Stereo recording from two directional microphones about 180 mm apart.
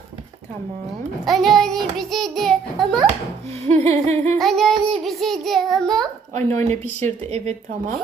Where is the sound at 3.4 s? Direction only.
35° right (ahead or behind).